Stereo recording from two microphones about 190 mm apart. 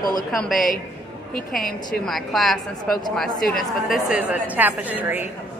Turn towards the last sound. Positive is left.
turn(degrees=-10)  # may be behind; listen again after turning